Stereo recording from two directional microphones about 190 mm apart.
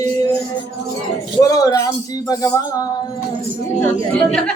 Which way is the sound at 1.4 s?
20° left (ahead or behind).